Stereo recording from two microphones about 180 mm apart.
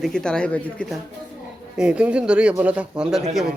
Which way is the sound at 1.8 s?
5° right (ahead or behind).